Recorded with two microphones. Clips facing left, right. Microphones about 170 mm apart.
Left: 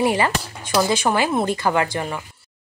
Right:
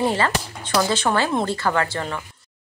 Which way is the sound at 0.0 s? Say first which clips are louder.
Left 2 dB; 15° left (ahead or behind).